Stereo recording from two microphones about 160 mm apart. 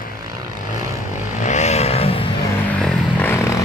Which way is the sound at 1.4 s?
45° left (ahead or behind).